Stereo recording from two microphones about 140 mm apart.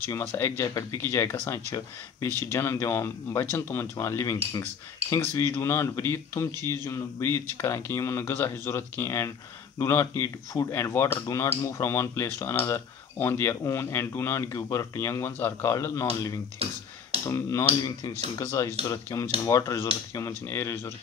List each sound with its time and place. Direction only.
0.1 s speech: 20° left (ahead or behind)